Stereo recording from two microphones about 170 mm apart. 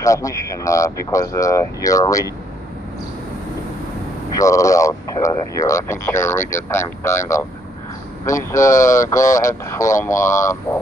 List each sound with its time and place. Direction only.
0.0 s speech: 20° left (ahead or behind)
4.4 s speech: 20° left (ahead or behind)